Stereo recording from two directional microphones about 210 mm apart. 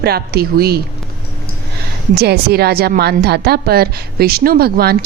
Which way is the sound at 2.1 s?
50° right (ahead or behind).